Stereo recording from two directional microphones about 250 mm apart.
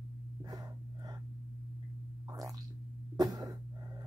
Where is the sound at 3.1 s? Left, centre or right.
Centre.